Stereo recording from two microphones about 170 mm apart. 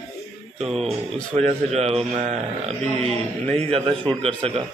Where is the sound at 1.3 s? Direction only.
40° right (ahead or behind).